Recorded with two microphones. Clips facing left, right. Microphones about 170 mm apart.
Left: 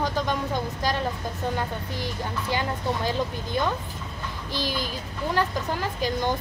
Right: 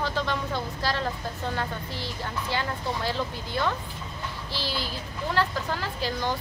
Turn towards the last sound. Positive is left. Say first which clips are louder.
# left 3 dB
turn(degrees=15)  # may be behind; listen again after turning